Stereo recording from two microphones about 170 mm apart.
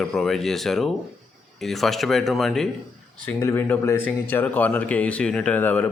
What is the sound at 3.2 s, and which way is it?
Speech, 10° left (ahead or behind).